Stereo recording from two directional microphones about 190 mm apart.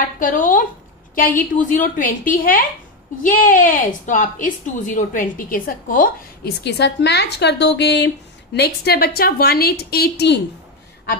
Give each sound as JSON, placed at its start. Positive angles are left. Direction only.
{"t": 0.2, "sound": "a woman's voice", "side_deg": 45}